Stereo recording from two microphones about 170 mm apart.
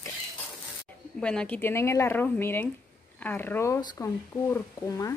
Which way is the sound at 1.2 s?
5° left (ahead or behind).